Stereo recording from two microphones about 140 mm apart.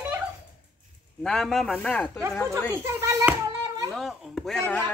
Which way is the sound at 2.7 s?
20° right (ahead or behind).